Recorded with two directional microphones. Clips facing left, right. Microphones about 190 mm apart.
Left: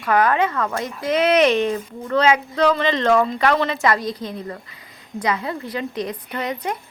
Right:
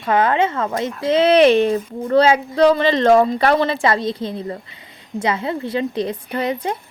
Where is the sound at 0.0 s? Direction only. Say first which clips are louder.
Right 1 dB; 25° right (ahead or behind).